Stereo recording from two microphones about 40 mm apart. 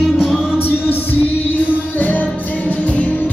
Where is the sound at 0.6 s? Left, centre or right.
Left.